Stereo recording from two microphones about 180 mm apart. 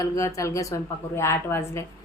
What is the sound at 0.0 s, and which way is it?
A woman's voice, 15° left (ahead or behind).